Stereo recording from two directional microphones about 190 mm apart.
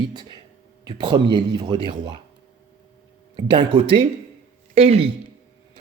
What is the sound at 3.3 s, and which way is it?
Speech, 25° right (ahead or behind).